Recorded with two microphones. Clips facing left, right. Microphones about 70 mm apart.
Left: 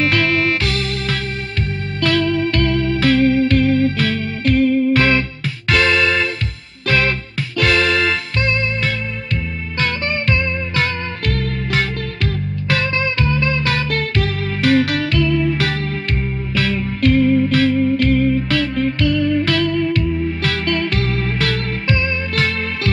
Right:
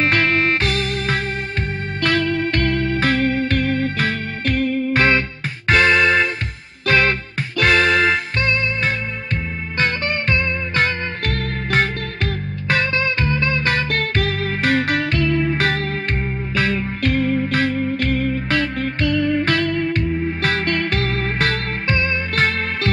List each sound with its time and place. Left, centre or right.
0.0 s music: right
9.8 s music: right